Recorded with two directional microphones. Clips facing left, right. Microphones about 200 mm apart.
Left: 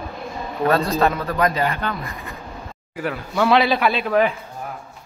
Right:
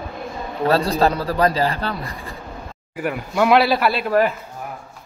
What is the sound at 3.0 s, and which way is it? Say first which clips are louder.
Speech: right 1 dB; 10° right (ahead or behind).